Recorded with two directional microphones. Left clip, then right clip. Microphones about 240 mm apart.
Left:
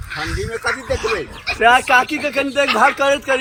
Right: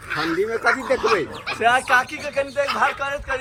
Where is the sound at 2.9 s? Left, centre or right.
Left.